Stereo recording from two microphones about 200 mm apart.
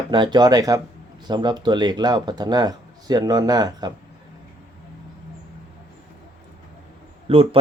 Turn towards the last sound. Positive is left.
turn(degrees=-25)  # may be behind; listen again after turning